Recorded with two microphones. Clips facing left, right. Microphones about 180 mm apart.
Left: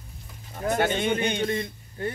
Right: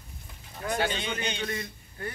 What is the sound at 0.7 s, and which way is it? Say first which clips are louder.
Speech: left 6 dB; 50° left (ahead or behind).